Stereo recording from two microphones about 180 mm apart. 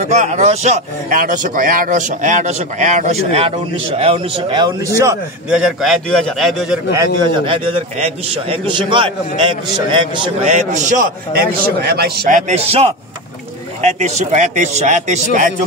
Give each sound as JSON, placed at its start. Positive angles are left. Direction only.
{"t": 0.1, "sound": "a man's voice", "side_deg": -40}
{"t": 5.5, "sound": "a man's voice", "side_deg": -5}
{"t": 6.9, "sound": "a man's voice", "side_deg": -20}
{"t": 7.4, "sound": "a man's voice", "side_deg": -30}
{"t": 10.5, "sound": "a man's voice", "side_deg": -40}
{"t": 12.4, "sound": "a man's voice", "side_deg": -35}